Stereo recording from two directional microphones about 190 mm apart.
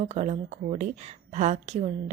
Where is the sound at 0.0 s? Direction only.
40° right (ahead or behind).